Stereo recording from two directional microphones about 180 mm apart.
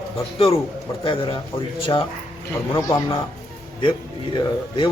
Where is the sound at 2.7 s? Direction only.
15° left (ahead or behind).